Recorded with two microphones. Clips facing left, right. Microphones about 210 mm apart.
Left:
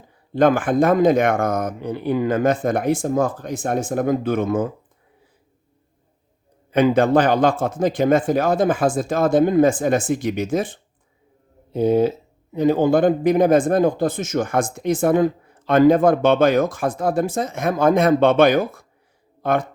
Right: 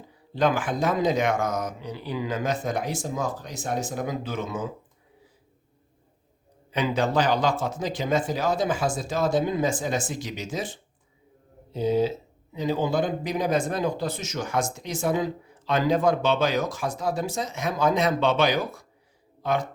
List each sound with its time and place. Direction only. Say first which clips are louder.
0.3 s speech: left 8 dB; 50° left (ahead or behind)
6.7 s speech: left 9 dB; 55° left (ahead or behind)